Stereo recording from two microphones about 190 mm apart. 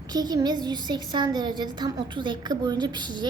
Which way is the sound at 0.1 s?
20° right (ahead or behind).